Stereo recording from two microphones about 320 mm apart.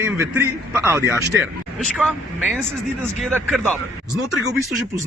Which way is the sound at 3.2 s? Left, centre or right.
Centre.